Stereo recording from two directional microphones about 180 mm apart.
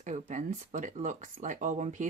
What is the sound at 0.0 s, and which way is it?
Speech, 45° right (ahead or behind).